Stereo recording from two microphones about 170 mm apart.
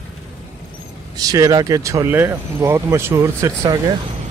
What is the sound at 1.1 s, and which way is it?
Speech, 20° right (ahead or behind).